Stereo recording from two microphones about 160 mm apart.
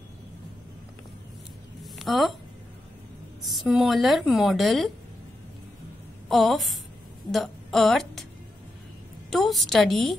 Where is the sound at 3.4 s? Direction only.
Centre (ahead or behind).